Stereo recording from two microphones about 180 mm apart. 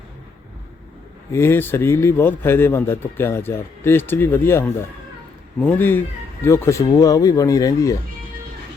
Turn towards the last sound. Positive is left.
turn(degrees=20)  # may be behind; listen again after turning